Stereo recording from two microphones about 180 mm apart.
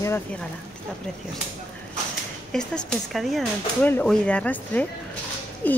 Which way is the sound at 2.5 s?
5° left (ahead or behind).